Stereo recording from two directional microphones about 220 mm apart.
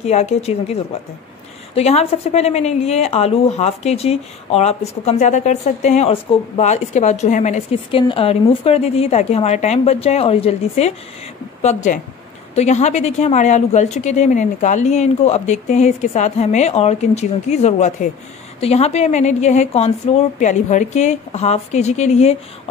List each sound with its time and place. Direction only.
0.0 s a woman's voice: 30° left (ahead or behind)
1.8 s a woman's voice: 30° left (ahead or behind)